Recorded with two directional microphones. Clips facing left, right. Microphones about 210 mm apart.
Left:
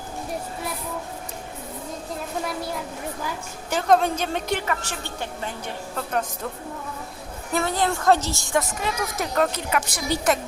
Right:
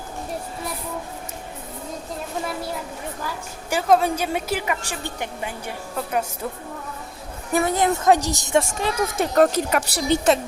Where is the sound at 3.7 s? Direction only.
5° right (ahead or behind).